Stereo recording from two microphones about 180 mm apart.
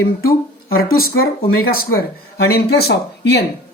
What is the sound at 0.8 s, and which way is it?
Speech, 60° left (ahead or behind).